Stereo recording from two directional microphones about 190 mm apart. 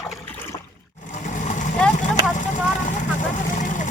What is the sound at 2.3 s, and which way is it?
Vehicle, 40° left (ahead or behind).